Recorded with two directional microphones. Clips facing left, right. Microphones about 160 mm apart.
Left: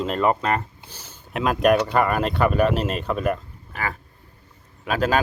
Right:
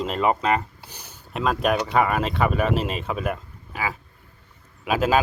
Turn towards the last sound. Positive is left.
turn(degrees=-5)  # may be behind; listen again after turning